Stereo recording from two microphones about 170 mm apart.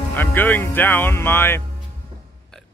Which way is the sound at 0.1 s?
10° left (ahead or behind).